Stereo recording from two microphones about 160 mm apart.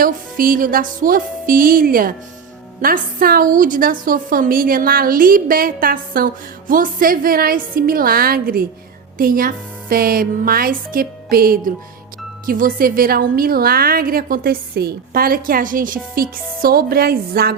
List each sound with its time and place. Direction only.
0.0 s a woman's voice: 60° right (ahead or behind)